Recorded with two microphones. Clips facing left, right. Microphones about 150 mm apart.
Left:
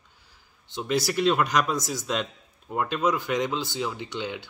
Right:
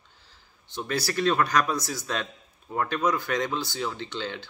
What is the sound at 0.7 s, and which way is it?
Speech, 20° left (ahead or behind).